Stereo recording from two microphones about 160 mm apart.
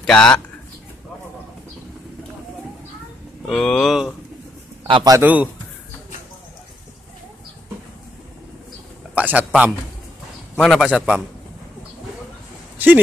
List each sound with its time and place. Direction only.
0.0 s a man's voice: 5° left (ahead or behind)
3.4 s speech: 5° left (ahead or behind)
4.8 s a man's voice: 25° right (ahead or behind)
5.2 s a man's voice: 10° right (ahead or behind)
9.1 s a man's voice: 10° right (ahead or behind)
10.6 s speech: centre (ahead or behind)